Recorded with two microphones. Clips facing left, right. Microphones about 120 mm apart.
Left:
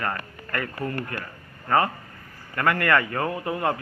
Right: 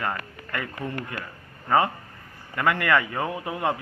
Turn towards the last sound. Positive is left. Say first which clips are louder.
# left 1 dB
turn(degrees=-15)  # may be behind; listen again after turning